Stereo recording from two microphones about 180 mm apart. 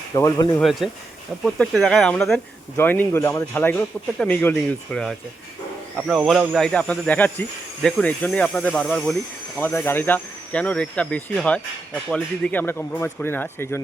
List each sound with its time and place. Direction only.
0.1 s speech: 20° left (ahead or behind)
0.5 s speech: centre (ahead or behind)